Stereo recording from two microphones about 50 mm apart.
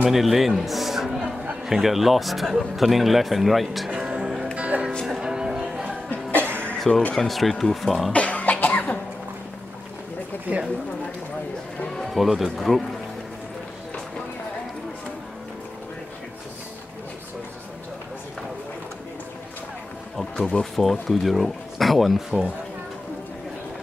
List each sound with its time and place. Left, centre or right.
0.1 s speech: centre
3.9 s music: right
5.0 s music: centre
6.9 s speech: left
7.2 s speech: centre
8.1 s cough: left
10.5 s speech: right
12.0 s speech: centre
20.3 s speech: centre
20.7 s speech: centre